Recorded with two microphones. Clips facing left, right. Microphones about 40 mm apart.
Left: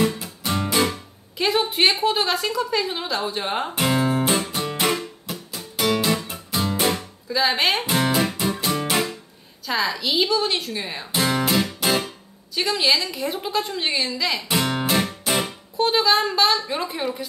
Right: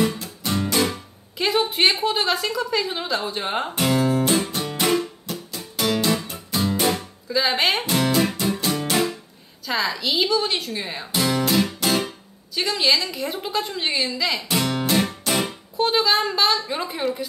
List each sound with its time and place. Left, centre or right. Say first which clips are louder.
0.0 s music: even; centre
4.0 s music: right 1 dB; centre
4.3 s music: right 1 dB; centre
7.8 s music: right 1 dB; centre
9.7 s a woman's voice: even; centre
11.1 s guitar: even; centre
11.8 s music: left 3 dB; centre
12.5 s a woman's voice: even; centre
14.6 s music: right 1 dB; centre